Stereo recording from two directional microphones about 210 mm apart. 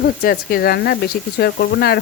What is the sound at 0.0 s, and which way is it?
Speech, 45° left (ahead or behind).